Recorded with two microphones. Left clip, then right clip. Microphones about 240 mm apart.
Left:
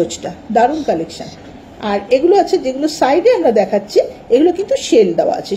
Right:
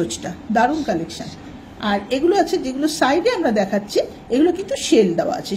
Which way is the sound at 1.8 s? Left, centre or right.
Right.